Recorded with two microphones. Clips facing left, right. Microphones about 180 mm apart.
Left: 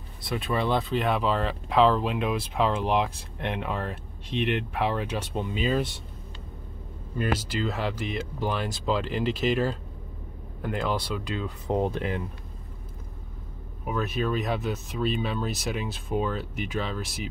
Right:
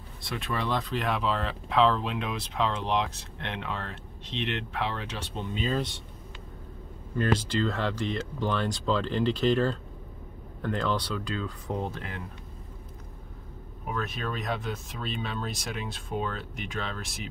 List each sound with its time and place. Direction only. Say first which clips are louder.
0.8 s speech: left 4 dB; 5° left (ahead or behind)
7.2 s speech: right 2 dB; 10° left (ahead or behind)
13.9 s speech: left 6 dB; 5° left (ahead or behind)